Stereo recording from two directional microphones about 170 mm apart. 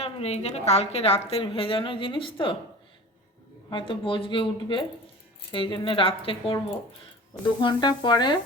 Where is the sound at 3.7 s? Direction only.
30° left (ahead or behind).